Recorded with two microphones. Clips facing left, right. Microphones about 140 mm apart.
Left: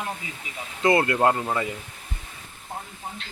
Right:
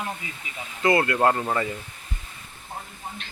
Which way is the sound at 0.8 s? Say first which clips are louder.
Left 1 dB; 25° left (ahead or behind).